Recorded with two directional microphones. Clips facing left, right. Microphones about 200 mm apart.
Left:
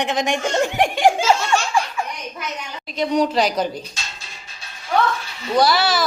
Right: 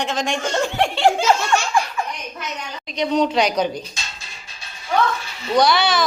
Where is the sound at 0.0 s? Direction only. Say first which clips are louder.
Left 2 dB; 15° left (ahead or behind).